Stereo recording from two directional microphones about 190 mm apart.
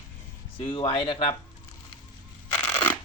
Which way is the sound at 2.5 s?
10° left (ahead or behind).